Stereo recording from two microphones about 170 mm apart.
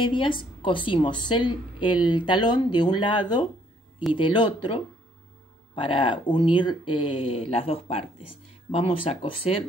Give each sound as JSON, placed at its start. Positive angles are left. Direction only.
{"t": 0.0, "sound": "a woman's voice", "side_deg": 30}